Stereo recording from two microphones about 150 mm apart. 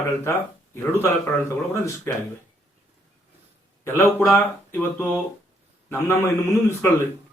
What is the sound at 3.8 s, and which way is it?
Speech, 15° left (ahead or behind).